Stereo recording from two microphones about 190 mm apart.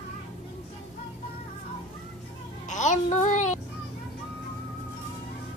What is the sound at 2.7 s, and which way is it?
Speech, 40° left (ahead or behind).